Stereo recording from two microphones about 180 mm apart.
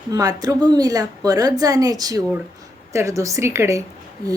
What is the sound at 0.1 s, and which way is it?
A woman's voice, 20° right (ahead or behind).